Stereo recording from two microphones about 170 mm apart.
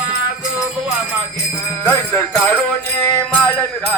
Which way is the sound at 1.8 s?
10° left (ahead or behind).